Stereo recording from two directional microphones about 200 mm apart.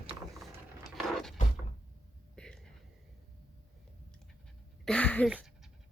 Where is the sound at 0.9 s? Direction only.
Centre (ahead or behind).